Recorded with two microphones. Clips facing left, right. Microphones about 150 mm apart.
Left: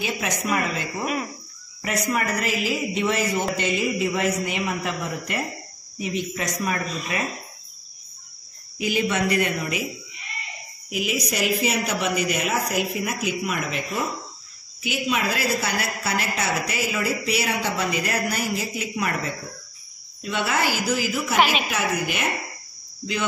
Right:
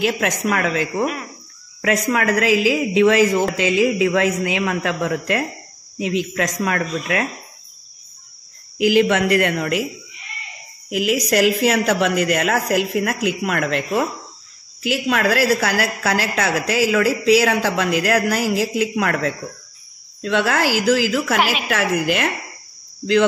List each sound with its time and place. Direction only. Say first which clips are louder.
0.0 s a woman's voice: right 7 dB; 90° right
8.7 s a woman's voice: right 8 dB; 90° right
10.9 s a woman's voice: right 8 dB; 90° right